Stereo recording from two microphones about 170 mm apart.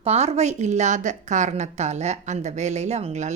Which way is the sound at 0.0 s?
40° right (ahead or behind).